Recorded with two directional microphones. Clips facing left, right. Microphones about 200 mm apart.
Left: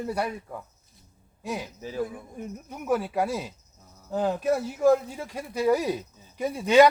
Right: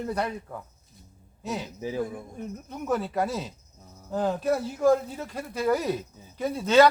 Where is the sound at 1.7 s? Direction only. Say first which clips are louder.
Right 4 dB; 15° right (ahead or behind).